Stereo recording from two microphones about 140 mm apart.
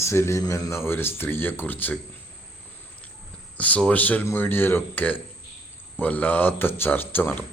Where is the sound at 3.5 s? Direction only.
10° left (ahead or behind).